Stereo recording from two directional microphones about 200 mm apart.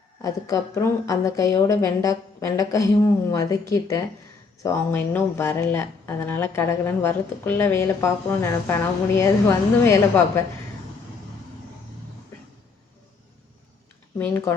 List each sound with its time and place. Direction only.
0.2 s speech: 15° left (ahead or behind)
14.2 s speech: 10° left (ahead or behind)